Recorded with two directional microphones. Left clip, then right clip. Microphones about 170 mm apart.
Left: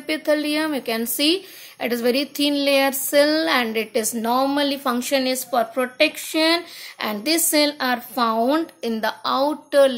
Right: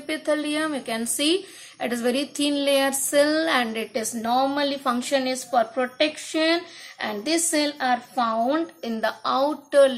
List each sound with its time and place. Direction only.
0.0 s a woman's voice: 30° left (ahead or behind)